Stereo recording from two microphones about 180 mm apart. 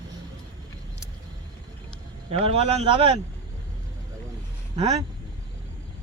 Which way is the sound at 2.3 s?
35° right (ahead or behind).